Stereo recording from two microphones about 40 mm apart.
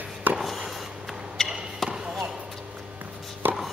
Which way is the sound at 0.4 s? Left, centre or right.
Centre.